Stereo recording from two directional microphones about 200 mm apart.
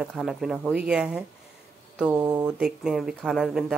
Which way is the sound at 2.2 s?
20° right (ahead or behind).